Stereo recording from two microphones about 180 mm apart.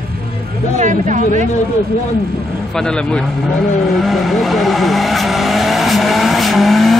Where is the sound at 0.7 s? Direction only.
45° right (ahead or behind).